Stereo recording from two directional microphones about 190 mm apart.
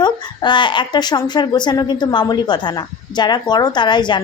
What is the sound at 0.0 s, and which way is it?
Speech, 25° left (ahead or behind).